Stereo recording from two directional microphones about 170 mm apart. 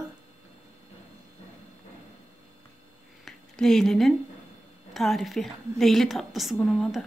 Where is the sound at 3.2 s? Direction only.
5° left (ahead or behind).